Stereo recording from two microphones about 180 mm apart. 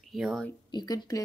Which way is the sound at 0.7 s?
20° left (ahead or behind).